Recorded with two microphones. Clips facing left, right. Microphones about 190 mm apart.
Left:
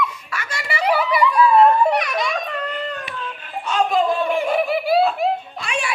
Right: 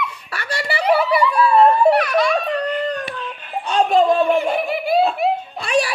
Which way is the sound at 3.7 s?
35° right (ahead or behind).